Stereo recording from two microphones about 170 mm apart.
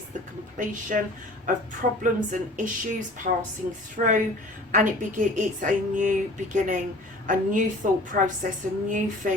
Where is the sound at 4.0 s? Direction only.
45° right (ahead or behind).